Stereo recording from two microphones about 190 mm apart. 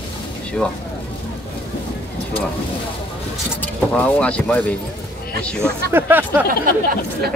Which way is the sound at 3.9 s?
5° left (ahead or behind).